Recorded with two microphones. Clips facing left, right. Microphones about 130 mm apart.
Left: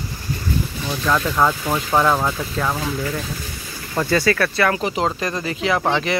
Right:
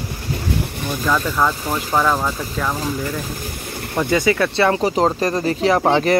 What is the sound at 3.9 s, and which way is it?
Speech, 15° right (ahead or behind).